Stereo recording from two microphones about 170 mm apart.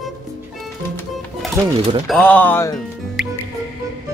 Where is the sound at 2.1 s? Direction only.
10° left (ahead or behind).